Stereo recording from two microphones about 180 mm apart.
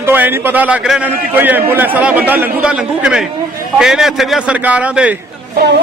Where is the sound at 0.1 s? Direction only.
10° right (ahead or behind).